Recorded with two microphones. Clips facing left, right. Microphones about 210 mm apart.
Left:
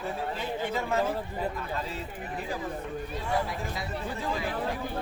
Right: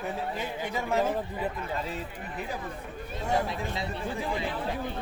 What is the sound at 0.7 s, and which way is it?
Speech, 15° right (ahead or behind).